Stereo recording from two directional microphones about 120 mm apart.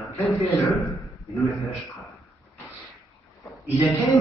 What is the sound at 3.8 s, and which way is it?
Speech, 25° left (ahead or behind).